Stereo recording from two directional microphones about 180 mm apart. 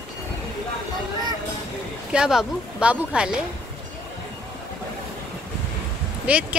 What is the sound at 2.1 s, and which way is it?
Speech, 5° right (ahead or behind).